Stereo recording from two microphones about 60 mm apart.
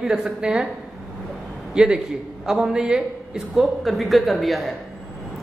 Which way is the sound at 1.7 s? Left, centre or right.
Centre.